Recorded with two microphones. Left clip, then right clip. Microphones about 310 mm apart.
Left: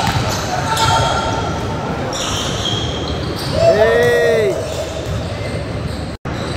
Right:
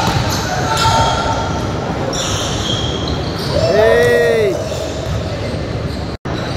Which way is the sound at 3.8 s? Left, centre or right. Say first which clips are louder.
Right 2 dB; centre.